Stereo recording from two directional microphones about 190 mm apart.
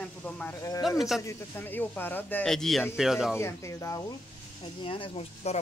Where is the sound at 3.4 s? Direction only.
15° left (ahead or behind); by 5.6 s 35° left (ahead or behind).